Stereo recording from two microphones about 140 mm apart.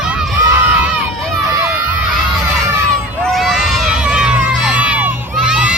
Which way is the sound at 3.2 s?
Centre (ahead or behind).